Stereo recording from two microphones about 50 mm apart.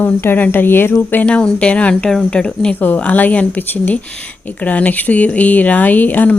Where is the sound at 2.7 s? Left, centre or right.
Left.